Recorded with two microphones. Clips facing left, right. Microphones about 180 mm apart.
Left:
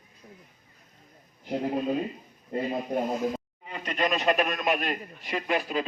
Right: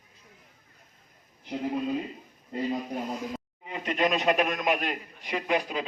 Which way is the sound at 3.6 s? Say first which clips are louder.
Right 2 dB; 15° right (ahead or behind).